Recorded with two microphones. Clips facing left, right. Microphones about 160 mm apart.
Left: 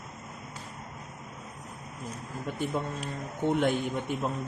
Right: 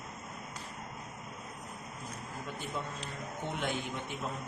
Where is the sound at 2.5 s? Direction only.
50° left (ahead or behind).